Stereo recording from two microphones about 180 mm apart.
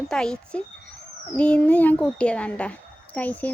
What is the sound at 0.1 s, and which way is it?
A woman's voice, 5° left (ahead or behind).